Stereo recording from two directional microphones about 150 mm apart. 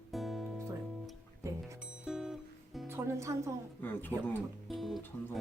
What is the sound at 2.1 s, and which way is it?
Music, 5° right (ahead or behind).